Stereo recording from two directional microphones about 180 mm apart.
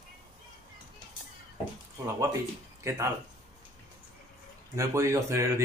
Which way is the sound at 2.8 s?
15° right (ahead or behind).